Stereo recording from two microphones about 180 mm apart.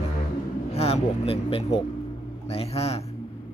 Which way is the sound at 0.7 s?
35° left (ahead or behind).